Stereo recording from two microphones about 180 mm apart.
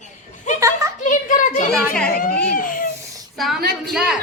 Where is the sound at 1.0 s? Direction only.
45° left (ahead or behind).